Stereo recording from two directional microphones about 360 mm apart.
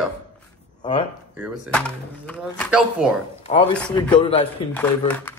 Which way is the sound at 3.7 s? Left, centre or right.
Centre.